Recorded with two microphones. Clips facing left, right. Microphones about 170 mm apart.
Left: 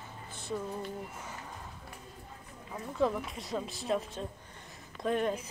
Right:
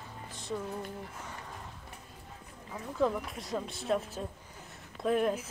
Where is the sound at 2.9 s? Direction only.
Centre (ahead or behind).